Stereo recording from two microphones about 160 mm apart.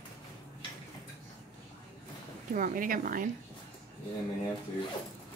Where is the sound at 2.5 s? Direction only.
55° right (ahead or behind).